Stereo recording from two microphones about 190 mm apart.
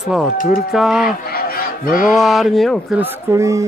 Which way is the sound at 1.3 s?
50° left (ahead or behind).